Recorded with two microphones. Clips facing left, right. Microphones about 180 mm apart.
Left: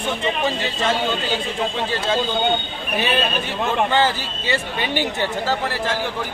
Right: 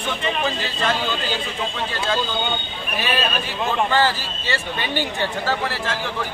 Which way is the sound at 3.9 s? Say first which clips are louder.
Left 1 dB; 20° left (ahead or behind).